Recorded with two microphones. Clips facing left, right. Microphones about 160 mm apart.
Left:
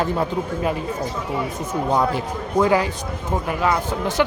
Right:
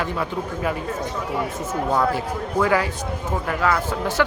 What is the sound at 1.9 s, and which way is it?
Speech, 15° left (ahead or behind).